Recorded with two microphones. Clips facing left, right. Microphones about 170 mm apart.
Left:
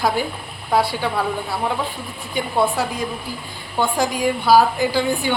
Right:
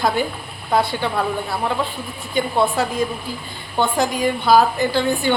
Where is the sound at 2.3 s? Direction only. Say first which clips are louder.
Right 1 dB; 10° left (ahead or behind).